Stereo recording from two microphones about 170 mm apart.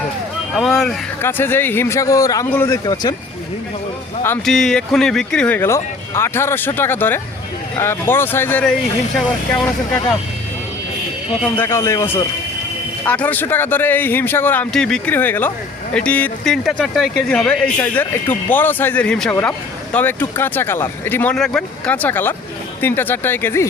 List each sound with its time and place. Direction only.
0.5 s speech: centre (ahead or behind)
1.2 s speech: 15° left (ahead or behind)
2.8 s speech: 25° left (ahead or behind)
4.4 s speech: centre (ahead or behind)
11.5 s speech: 15° left (ahead or behind)